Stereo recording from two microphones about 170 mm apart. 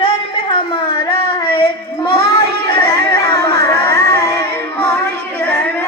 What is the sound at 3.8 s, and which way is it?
Music, 70° right (ahead or behind).